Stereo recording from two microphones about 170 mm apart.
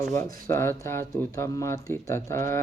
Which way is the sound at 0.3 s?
15° left (ahead or behind).